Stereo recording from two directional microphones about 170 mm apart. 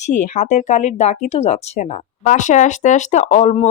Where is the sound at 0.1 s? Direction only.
45° left (ahead or behind).